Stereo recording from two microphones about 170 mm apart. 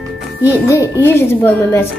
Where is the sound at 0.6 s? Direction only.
15° left (ahead or behind).